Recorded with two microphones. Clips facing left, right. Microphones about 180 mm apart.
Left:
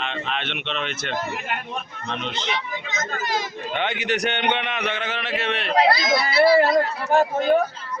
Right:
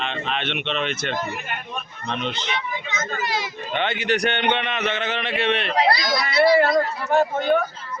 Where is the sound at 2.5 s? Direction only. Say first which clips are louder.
Even; 45° left (ahead or behind).